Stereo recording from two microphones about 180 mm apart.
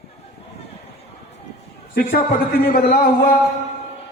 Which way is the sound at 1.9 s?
55° left (ahead or behind).